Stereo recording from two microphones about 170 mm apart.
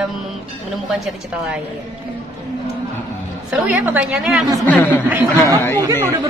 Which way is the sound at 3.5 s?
5° right (ahead or behind).